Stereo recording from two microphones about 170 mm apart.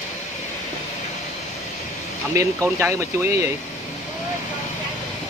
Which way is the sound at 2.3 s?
15° right (ahead or behind).